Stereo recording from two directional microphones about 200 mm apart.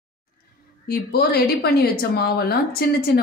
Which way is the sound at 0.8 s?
50° left (ahead or behind).